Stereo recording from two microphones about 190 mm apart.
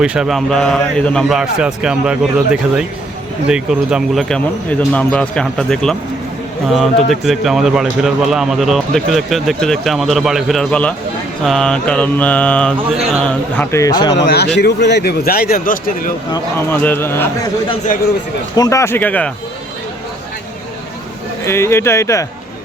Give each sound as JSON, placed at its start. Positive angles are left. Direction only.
{"t": 0.0, "sound": "a man's voice", "side_deg": -5}
{"t": 11.4, "sound": "mantra", "side_deg": 5}
{"t": 14.2, "sound": "a man's voice", "side_deg": 60}
{"t": 16.3, "sound": "mantra", "side_deg": 10}
{"t": 18.5, "sound": "mantra", "side_deg": 20}
{"t": 21.4, "sound": "mantra", "side_deg": 15}